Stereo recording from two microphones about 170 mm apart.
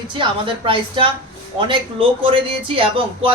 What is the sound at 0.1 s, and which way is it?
A woman's voice, 30° right (ahead or behind).